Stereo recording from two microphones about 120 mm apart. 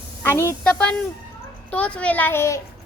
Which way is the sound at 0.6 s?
10° left (ahead or behind).